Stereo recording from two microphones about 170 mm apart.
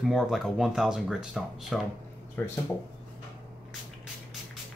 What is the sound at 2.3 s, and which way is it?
Speech, 15° left (ahead or behind).